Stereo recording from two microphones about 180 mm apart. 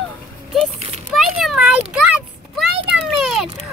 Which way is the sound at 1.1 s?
Centre (ahead or behind).